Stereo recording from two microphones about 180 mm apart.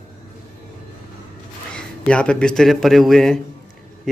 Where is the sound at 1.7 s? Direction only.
5° left (ahead or behind).